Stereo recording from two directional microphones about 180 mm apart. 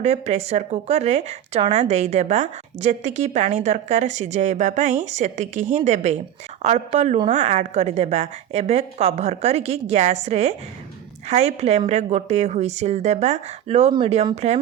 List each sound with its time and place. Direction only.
0.0 s a woman's voice: 35° right (ahead or behind)